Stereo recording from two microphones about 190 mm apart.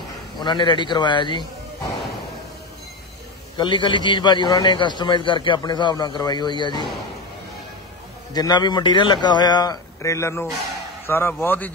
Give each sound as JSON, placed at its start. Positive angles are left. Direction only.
{"t": 0.4, "sound": "a man's voice", "side_deg": 25}
{"t": 3.5, "sound": "a man's voice", "side_deg": 25}
{"t": 8.3, "sound": "a man's voice", "side_deg": 20}